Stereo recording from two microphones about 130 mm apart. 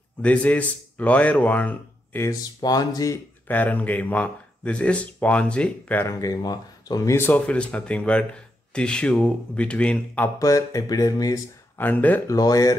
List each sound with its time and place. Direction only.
0.2 s speech: 10° left (ahead or behind)
2.6 s speech: 30° left (ahead or behind)
3.4 s speech: 10° left (ahead or behind)
6.0 s speech: 30° left (ahead or behind)
7.2 s speech: 15° left (ahead or behind)
10.4 s speech: 25° left (ahead or behind)
11.8 s speech: 15° left (ahead or behind)
12.3 s speech: 25° left (ahead or behind)